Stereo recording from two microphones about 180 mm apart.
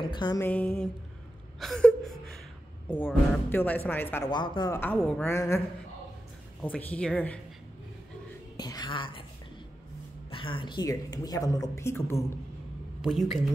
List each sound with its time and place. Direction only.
0.0 s a sound: 25° left (ahead or behind)
0.4 s a woman's voice: 10° left (ahead or behind)
1.6 s whimper: 5° left (ahead or behind)
3.5 s a woman's voice: 10° left (ahead or behind)
4.3 s a woman's voice: 25° left (ahead or behind)
4.7 s a woman's voice: 10° left (ahead or behind)
6.6 s a woman's voice: 5° left (ahead or behind)
8.5 s a woman's voice: 20° left (ahead or behind)
10.3 s a woman's voice: 30° left (ahead or behind)
13.0 s a woman's voice: centre (ahead or behind)